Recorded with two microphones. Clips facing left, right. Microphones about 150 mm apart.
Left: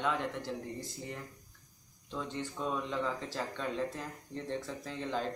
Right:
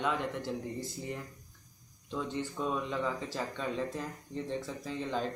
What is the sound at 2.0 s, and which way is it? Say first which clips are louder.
Speech: right 3 dB; 5° right (ahead or behind).